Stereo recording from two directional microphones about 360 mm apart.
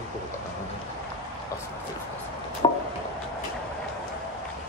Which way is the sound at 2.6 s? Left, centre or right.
Centre.